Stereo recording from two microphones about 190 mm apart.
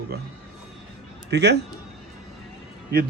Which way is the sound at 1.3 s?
60° right (ahead or behind).